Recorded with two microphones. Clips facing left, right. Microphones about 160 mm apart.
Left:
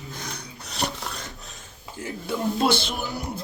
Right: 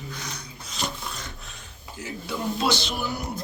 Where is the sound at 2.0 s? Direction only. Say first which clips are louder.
Left 2 dB; 50° left (ahead or behind).